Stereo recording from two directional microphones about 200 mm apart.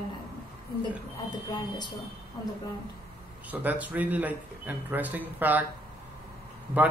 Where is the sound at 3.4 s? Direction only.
10° right (ahead or behind).